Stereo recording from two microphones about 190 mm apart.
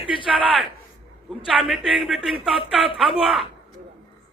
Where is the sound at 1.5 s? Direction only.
5° right (ahead or behind).